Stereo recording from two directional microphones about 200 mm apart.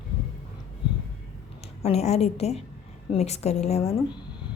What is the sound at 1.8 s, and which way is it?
Speech, 30° left (ahead or behind).